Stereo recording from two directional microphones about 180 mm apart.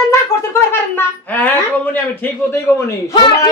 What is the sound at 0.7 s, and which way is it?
Speech, 10° left (ahead or behind).